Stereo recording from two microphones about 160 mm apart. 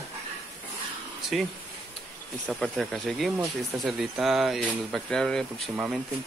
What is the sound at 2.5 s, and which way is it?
Speech, centre (ahead or behind).